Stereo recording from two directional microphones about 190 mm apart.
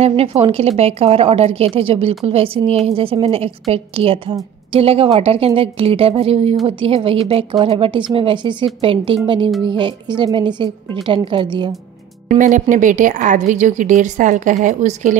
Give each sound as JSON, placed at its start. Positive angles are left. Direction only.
{"t": 0.0, "sound": "a woman's voice", "side_deg": -30}
{"t": 12.3, "sound": "a woman's voice", "side_deg": -45}